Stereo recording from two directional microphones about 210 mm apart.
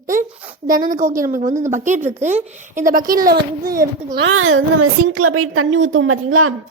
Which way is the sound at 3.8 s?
55° right (ahead or behind).